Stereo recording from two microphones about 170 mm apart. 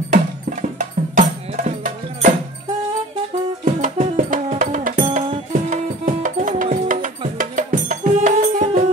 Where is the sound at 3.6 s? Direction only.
50° right (ahead or behind).